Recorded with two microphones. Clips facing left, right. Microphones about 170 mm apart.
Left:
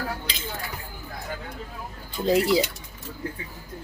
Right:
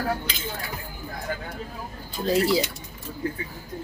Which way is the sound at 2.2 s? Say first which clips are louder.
Left 1 dB; 20° left (ahead or behind).